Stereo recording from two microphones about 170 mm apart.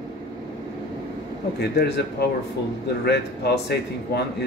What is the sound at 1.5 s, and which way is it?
Speech, 75° left (ahead or behind).